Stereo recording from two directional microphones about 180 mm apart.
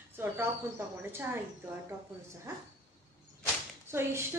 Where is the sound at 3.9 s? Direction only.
15° right (ahead or behind).